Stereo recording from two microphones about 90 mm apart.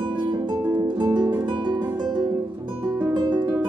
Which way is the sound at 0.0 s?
50° right (ahead or behind).